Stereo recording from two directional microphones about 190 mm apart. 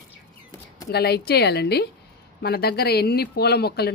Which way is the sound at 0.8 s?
60° left (ahead or behind).